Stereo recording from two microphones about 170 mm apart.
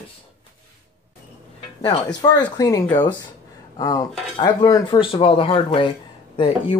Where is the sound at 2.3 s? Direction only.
20° left (ahead or behind).